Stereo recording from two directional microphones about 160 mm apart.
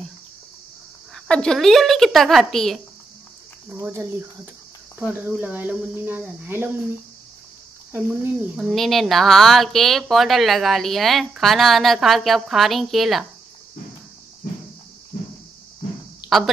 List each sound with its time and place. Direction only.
1.1 s speech: 5° left (ahead or behind)
3.8 s speech: 15° right (ahead or behind)
7.9 s speech: 10° right (ahead or behind)